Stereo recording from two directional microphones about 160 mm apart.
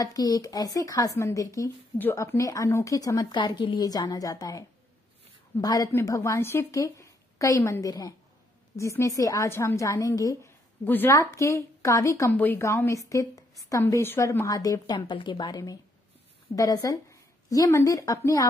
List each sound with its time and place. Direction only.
0.0 s a woman's voice: 25° left (ahead or behind)